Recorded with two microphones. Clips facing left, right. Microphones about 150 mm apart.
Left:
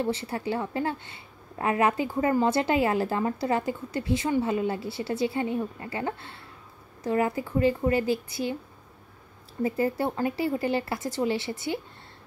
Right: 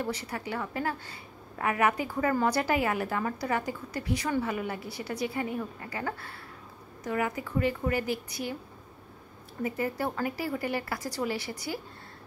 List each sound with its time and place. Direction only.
0.0 s a woman's voice: 25° left (ahead or behind)
9.6 s a woman's voice: 30° left (ahead or behind)